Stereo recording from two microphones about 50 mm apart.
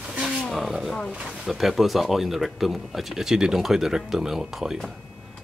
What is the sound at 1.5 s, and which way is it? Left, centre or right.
Speech, centre.